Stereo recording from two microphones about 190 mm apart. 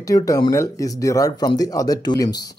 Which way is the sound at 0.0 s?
15° left (ahead or behind).